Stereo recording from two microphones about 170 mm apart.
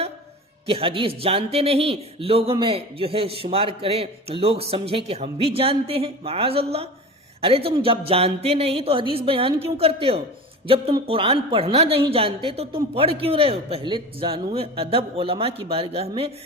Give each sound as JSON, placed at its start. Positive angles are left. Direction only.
{"t": 0.7, "sound": "speech", "side_deg": -30}